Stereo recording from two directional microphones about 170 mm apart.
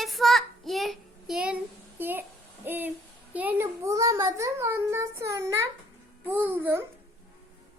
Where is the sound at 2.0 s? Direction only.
10° right (ahead or behind).